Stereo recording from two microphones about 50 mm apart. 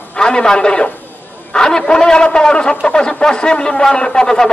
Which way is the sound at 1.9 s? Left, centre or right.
Centre.